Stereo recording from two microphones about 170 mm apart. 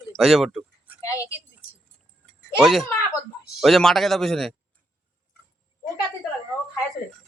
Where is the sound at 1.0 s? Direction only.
20° left (ahead or behind).